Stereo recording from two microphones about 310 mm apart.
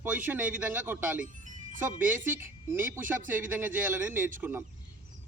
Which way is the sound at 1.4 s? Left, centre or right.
Right.